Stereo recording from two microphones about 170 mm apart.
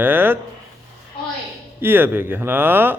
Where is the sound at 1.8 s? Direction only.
15° right (ahead or behind).